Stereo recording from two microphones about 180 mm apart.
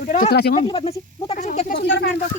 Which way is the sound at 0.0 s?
45° left (ahead or behind).